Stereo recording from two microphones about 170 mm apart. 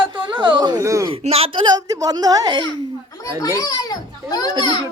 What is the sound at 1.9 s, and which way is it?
Speech, 20° right (ahead or behind).